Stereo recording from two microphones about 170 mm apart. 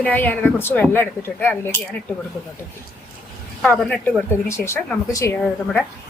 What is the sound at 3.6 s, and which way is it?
Speech, 5° left (ahead or behind).